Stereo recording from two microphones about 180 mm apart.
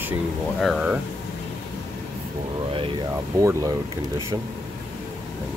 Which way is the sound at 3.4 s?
15° right (ahead or behind).